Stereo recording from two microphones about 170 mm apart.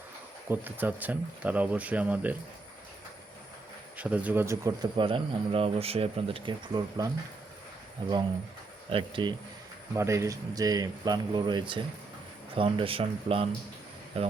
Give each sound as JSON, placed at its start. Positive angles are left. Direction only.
{"t": 0.4, "sound": "speech", "side_deg": -10}
{"t": 3.9, "sound": "speech", "side_deg": -10}
{"t": 8.9, "sound": "speech", "side_deg": -30}
{"t": 9.9, "sound": "speech", "side_deg": -15}